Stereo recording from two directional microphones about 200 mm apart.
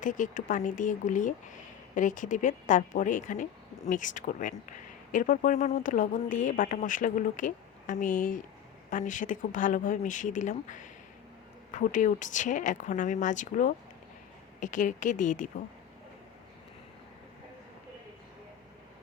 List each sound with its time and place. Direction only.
0.0 s speech: 40° left (ahead or behind)